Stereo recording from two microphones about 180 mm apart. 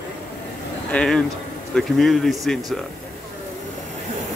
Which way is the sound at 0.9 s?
Centre (ahead or behind).